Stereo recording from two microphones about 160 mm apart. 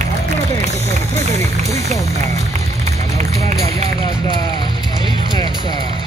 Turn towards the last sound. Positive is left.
turn(degrees=25)  # may be behind; listen again after turning